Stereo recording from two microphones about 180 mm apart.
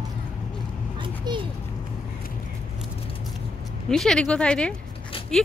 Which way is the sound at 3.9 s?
5° left (ahead or behind).